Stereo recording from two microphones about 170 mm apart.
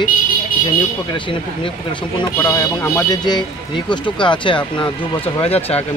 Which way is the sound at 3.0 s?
25° left (ahead or behind).